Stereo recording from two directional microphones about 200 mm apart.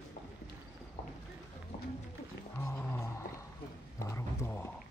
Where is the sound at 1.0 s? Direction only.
30° left (ahead or behind).